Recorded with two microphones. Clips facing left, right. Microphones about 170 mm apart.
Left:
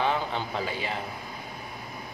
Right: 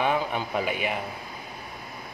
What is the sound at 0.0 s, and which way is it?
Speech, 15° right (ahead or behind).